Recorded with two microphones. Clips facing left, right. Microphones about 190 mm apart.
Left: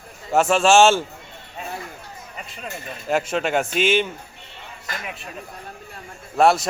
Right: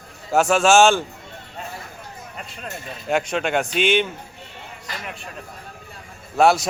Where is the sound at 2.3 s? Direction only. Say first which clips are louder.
Left 1 dB; centre (ahead or behind).